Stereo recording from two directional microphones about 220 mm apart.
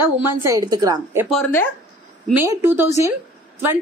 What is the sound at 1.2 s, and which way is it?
Speech, 5° left (ahead or behind).